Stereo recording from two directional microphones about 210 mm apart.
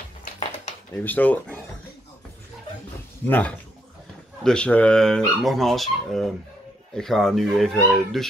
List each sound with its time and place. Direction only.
0.2 s a sound: 35° left (ahead or behind)
0.9 s speech: 10° left (ahead or behind)
3.3 s speech: 10° left (ahead or behind)